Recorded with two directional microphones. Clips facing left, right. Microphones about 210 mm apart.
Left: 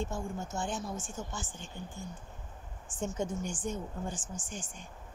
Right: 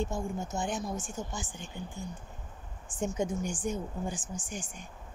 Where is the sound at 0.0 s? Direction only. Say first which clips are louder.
Right 3 dB; 15° right (ahead or behind).